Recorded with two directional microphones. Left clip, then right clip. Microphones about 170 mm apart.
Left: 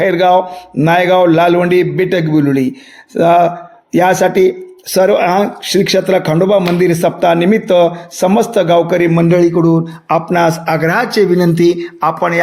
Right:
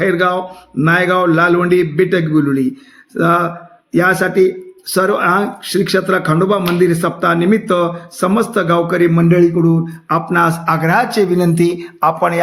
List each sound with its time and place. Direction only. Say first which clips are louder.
0.0 s speech: left 5 dB; 20° left (ahead or behind); by 12.4 s 5° left (ahead or behind)